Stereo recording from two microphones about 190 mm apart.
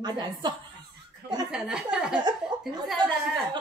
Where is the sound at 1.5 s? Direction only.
5° right (ahead or behind).